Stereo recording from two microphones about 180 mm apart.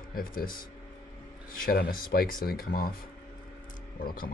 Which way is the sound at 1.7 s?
55° left (ahead or behind).